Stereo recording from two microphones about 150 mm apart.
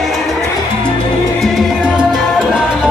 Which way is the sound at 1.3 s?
Centre (ahead or behind).